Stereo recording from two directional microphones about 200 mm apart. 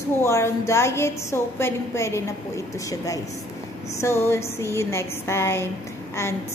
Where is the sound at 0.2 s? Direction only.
15° left (ahead or behind).